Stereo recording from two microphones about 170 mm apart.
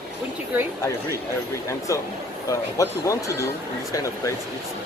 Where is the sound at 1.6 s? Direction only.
15° left (ahead or behind).